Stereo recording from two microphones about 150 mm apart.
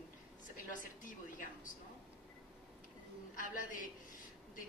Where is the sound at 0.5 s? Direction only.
60° left (ahead or behind).